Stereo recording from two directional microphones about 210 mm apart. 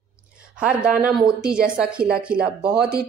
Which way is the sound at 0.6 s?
5° right (ahead or behind).